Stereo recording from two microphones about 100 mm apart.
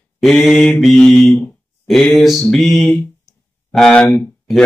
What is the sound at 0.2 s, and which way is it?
Mantra, 5° left (ahead or behind).